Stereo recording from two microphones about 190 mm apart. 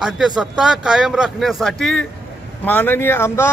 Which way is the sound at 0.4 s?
5° right (ahead or behind).